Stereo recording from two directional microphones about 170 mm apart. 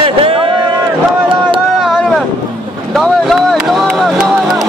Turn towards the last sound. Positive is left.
turn(degrees=0)  # may be behind; listen again after turning